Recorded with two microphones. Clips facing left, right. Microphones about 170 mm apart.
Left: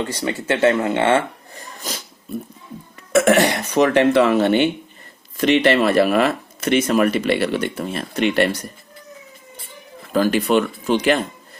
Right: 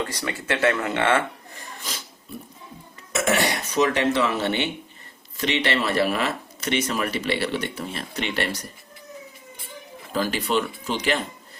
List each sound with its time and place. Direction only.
0.0 s speech: 25° left (ahead or behind)
3.1 s speech: 55° left (ahead or behind)
10.1 s speech: 55° left (ahead or behind)